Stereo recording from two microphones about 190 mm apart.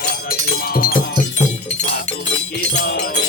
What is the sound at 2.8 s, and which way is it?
Music, 65° left (ahead or behind).